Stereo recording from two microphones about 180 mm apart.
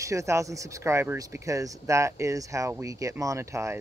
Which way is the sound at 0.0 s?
15° right (ahead or behind).